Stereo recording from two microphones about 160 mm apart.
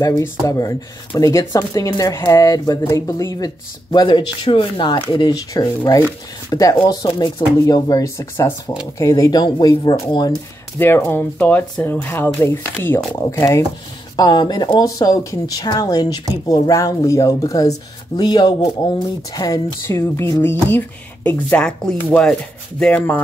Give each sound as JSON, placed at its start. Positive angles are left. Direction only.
{"t": 0.0, "sound": "speech", "side_deg": 20}
{"t": 10.8, "sound": "speech", "side_deg": 15}